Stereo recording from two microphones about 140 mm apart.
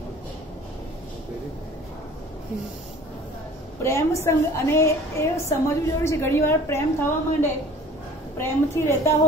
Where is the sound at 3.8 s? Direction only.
20° left (ahead or behind).